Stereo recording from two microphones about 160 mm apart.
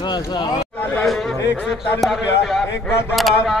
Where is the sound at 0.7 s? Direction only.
10° left (ahead or behind).